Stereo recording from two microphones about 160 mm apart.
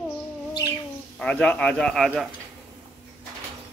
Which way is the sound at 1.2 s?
10° left (ahead or behind).